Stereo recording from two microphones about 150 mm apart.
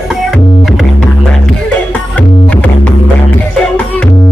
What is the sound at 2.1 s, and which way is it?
Music, 10° left (ahead or behind).